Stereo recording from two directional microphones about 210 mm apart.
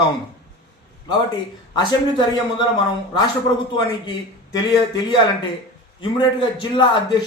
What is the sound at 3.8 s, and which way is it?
A man's voice, 20° left (ahead or behind).